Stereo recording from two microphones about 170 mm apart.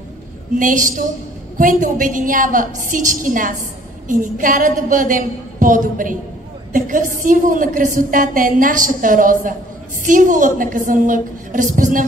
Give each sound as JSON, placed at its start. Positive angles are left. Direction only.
{"t": 0.6, "sound": "a woman's voice", "side_deg": -50}